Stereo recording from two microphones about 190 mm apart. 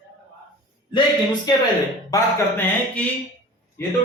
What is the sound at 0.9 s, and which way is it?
Speech, 25° left (ahead or behind).